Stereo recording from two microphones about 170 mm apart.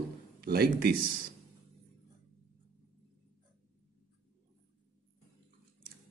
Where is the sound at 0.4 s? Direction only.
60° right (ahead or behind).